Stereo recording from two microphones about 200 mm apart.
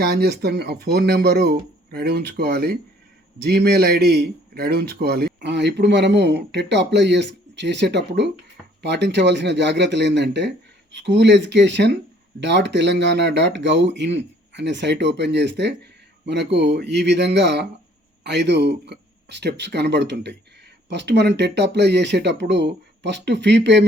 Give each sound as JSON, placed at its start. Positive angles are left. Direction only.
{"t": 0.0, "sound": "speech", "side_deg": -50}